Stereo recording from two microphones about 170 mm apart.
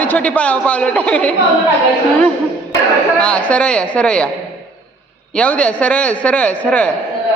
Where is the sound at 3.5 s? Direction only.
5° left (ahead or behind).